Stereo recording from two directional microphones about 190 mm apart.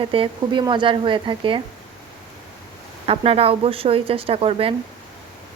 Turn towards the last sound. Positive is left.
turn(degrees=-30)  # may be behind; listen again after turning